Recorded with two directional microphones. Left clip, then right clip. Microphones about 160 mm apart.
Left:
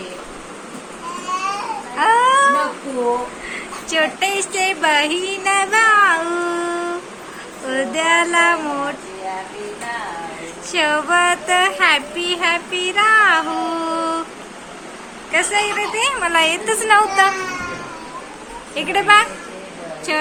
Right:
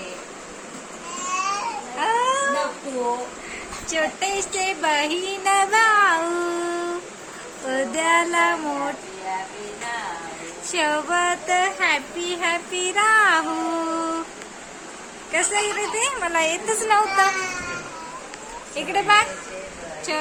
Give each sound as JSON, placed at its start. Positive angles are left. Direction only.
{"t": 2.0, "sound": "cat", "side_deg": -5}
{"t": 3.8, "sound": "a sound", "side_deg": -15}
{"t": 7.7, "sound": "female singing", "side_deg": -25}
{"t": 10.7, "sound": "child singing", "side_deg": -25}
{"t": 15.3, "sound": "a woman's voice", "side_deg": -30}
{"t": 18.7, "sound": "a woman's voice", "side_deg": -5}
{"t": 20.1, "sound": "a sound", "side_deg": -15}